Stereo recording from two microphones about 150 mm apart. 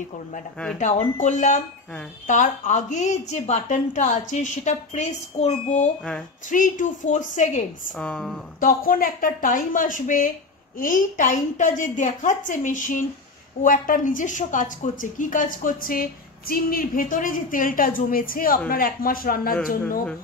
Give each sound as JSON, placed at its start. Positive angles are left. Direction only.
{"t": 0.7, "sound": "a woman's voice", "side_deg": 55}
{"t": 6.5, "sound": "a woman's voice", "side_deg": 60}
{"t": 7.9, "sound": "a woman's voice", "side_deg": 5}
{"t": 8.5, "sound": "a woman's voice", "side_deg": 70}